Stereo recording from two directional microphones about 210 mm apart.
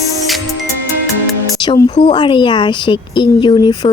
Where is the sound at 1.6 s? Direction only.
20° left (ahead or behind).